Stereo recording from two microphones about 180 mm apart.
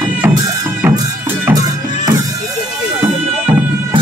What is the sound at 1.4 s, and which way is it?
Music, 20° right (ahead or behind).